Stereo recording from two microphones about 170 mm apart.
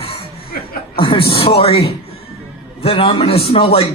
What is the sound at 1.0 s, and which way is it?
A man's voice, 30° left (ahead or behind).